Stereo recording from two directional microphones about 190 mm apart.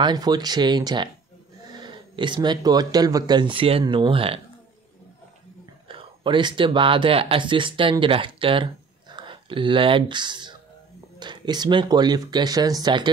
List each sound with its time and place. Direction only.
0.0 s speech: 20° right (ahead or behind)
5.9 s speech: 25° right (ahead or behind)